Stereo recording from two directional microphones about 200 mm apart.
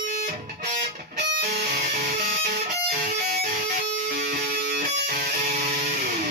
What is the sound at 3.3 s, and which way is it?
Music, 45° right (ahead or behind).